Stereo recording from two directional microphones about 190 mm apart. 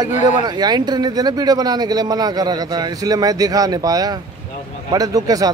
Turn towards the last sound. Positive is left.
turn(degrees=-20)  # may be behind; listen again after turning